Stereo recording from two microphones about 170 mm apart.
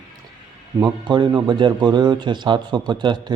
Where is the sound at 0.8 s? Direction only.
25° right (ahead or behind).